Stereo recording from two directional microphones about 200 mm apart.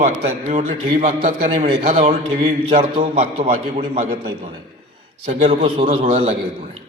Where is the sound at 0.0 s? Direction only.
35° right (ahead or behind).